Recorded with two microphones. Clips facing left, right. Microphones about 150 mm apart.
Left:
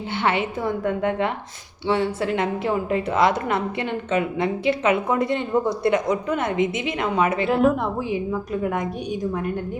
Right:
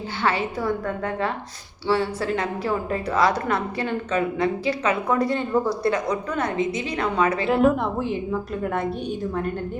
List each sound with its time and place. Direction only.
0.2 s a woman's voice: 25° left (ahead or behind)
7.4 s a woman's voice: centre (ahead or behind)